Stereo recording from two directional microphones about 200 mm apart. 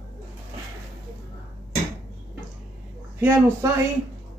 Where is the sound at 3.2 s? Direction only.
10° right (ahead or behind).